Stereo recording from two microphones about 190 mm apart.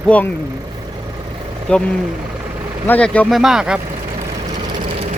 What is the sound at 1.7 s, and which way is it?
Speech, 5° left (ahead or behind).